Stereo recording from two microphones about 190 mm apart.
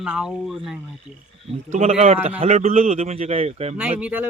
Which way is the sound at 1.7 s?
35° right (ahead or behind).